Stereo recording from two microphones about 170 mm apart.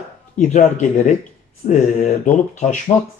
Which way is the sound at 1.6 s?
45° left (ahead or behind).